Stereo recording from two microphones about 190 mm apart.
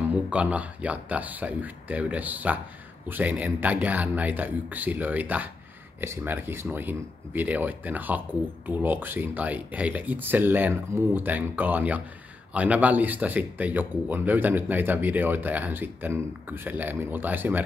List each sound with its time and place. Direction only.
0.1 s speech: 5° right (ahead or behind)